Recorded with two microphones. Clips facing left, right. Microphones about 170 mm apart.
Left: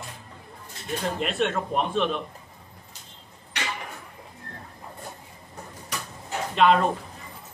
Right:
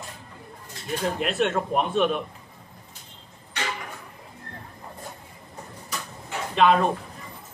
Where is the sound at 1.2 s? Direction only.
Centre (ahead or behind).